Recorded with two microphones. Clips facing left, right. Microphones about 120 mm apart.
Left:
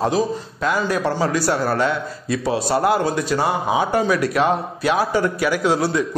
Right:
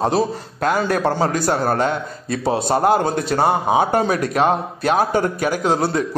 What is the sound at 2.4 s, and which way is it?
A man's voice, 30° right (ahead or behind).